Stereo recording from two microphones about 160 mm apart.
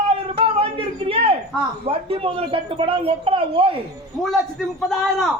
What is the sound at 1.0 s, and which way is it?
Speech, 35° right (ahead or behind).